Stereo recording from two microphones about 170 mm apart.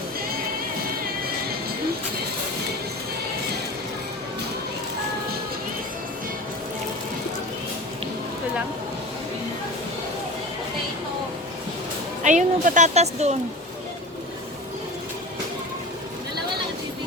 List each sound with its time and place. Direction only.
12.2 s speech: 45° right (ahead or behind)